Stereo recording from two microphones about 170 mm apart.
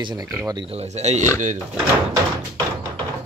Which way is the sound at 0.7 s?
40° right (ahead or behind).